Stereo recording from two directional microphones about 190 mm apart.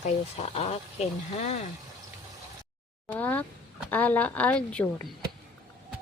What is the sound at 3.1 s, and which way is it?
A woman's voice, 10° left (ahead or behind).